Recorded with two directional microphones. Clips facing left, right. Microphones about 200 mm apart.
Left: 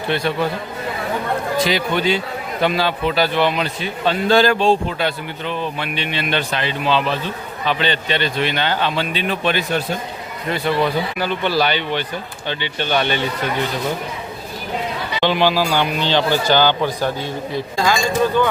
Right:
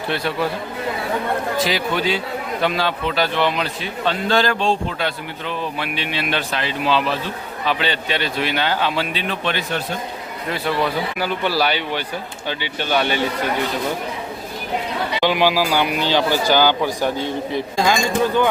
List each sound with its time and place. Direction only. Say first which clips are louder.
0.1 s a man's voice: left 3 dB; 5° right (ahead or behind)
1.5 s a man's voice: left 2 dB; centre (ahead or behind)
10.5 s speech: left 3 dB; 5° right (ahead or behind)
15.2 s speech: left 1 dB; 10° right (ahead or behind)